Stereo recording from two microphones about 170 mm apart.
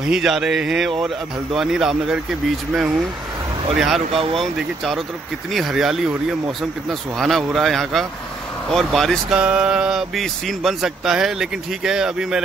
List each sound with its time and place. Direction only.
0.0 s speech: 5° right (ahead or behind)
3.7 s speech: centre (ahead or behind)